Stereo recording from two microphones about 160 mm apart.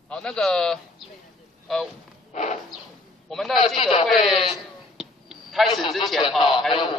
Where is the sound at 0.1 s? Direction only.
5° left (ahead or behind).